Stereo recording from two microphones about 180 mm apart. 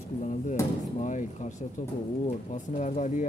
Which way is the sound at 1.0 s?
40° left (ahead or behind).